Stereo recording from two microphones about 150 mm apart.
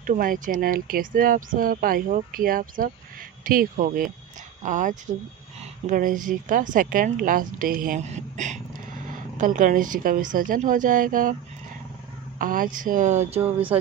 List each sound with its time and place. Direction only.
0.0 s a woman's voice: 65° right (ahead or behind)
8.0 s speech: 50° right (ahead or behind)
12.4 s a woman's voice: 65° right (ahead or behind); by 13.4 s 50° right (ahead or behind)